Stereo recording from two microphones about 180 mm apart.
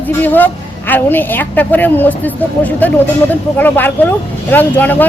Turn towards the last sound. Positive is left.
turn(degrees=10)  # may be behind; listen again after turning